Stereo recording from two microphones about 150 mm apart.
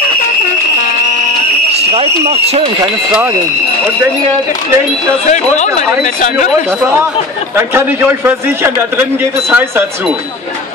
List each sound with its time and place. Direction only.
1.7 s a sound: 40° right (ahead or behind)
5.2 s speech: 50° left (ahead or behind)
7.5 s a man's voice: 15° right (ahead or behind)